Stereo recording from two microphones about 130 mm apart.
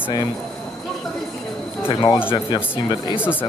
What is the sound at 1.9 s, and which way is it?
Speech, 35° left (ahead or behind).